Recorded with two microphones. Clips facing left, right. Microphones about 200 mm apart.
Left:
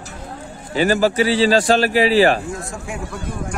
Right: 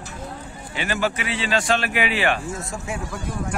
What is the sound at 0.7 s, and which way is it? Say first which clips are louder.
A man's voice: left 9 dB; 40° left (ahead or behind).